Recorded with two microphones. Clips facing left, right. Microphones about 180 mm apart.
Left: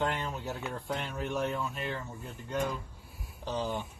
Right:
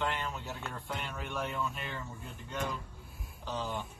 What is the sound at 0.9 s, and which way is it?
Speech, 40° left (ahead or behind).